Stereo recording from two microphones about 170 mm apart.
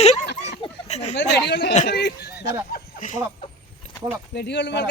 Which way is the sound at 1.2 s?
80° left.